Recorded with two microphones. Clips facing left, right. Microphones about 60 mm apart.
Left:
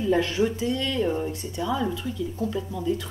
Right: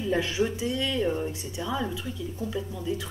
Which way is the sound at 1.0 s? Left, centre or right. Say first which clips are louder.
Left 2 dB; centre.